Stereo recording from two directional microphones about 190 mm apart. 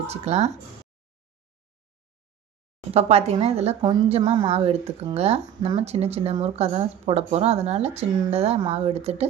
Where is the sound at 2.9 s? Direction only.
35° right (ahead or behind).